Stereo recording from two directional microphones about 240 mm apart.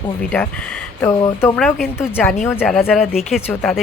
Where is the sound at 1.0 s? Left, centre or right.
Centre.